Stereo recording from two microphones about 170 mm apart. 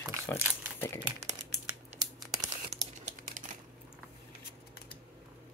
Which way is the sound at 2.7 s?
45° right (ahead or behind).